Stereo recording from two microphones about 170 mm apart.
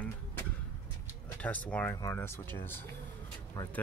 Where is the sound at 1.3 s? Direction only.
10° left (ahead or behind).